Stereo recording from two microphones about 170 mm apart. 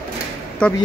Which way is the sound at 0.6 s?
5° left (ahead or behind).